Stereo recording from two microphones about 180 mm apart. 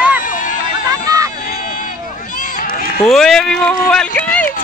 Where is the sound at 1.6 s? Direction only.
50° left (ahead or behind).